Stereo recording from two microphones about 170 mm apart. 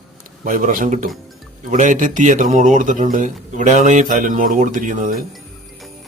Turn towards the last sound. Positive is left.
turn(degrees=-50)  # may be behind; listen again after turning